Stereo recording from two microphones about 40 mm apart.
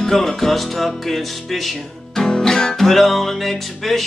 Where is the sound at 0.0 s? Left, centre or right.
Centre.